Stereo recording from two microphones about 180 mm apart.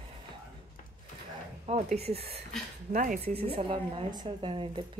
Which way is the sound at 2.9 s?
45° right (ahead or behind).